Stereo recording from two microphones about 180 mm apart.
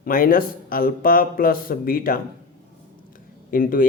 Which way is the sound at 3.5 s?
50° left (ahead or behind).